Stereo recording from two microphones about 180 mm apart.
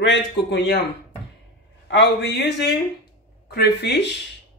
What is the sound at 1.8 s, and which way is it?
Speech, 75° left (ahead or behind).